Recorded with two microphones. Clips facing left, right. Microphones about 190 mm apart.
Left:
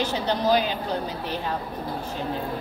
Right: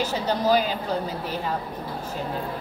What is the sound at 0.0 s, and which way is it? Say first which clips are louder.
Speech: even; 5° right (ahead or behind).